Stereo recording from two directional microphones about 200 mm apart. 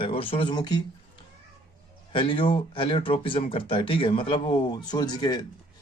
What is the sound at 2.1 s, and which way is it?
A man's voice, 25° left (ahead or behind).